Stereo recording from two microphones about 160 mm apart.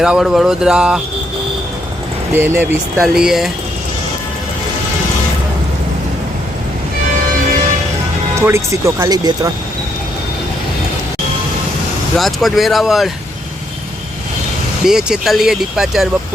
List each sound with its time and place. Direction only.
0.0 s speech: 5° right (ahead or behind)
2.3 s speech: 15° right (ahead or behind)
8.4 s speech: 15° right (ahead or behind)
12.1 s speech: centre (ahead or behind)
14.8 s speech: 5° right (ahead or behind)